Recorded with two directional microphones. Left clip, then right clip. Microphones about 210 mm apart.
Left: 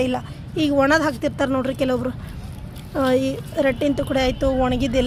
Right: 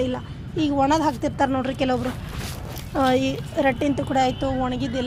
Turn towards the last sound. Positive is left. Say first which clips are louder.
# left 6 dB
turn(degrees=35)  # may be behind; listen again after turning